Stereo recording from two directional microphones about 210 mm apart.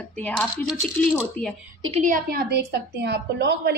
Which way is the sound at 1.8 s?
35° right (ahead or behind).